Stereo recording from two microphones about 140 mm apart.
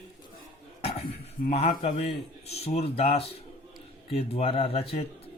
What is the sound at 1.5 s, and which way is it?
Speech, 45° left (ahead or behind).